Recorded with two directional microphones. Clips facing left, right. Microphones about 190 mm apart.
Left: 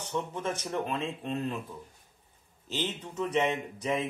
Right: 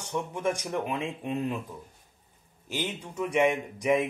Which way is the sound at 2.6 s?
10° right (ahead or behind).